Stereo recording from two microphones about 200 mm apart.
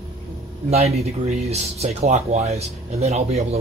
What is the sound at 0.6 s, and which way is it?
Speech, 30° right (ahead or behind).